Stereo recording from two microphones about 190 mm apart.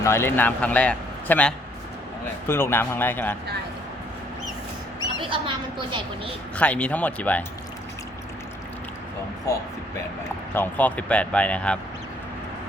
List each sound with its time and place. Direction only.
0.0 s a man's voice: 15° left (ahead or behind)
5.2 s a woman's voice: 25° right (ahead or behind)
6.6 s a man's voice: 5° left (ahead or behind)
10.5 s a man's voice: 10° left (ahead or behind)